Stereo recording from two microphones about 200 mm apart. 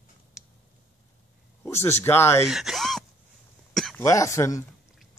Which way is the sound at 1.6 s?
10° left (ahead or behind).